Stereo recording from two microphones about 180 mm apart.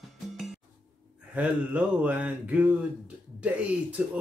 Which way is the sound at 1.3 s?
10° right (ahead or behind).